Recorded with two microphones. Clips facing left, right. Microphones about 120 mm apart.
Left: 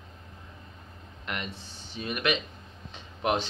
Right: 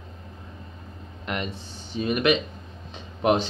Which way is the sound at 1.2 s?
30° right (ahead or behind).